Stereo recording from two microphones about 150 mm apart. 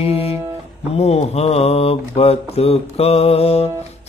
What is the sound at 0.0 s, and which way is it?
Speech, 40° left (ahead or behind).